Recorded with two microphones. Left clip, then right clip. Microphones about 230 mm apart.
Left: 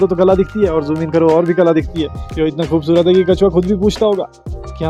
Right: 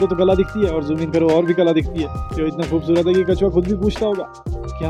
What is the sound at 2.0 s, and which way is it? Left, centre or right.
Speech, left.